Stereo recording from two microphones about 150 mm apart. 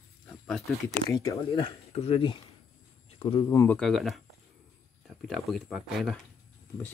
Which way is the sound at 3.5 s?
20° left (ahead or behind).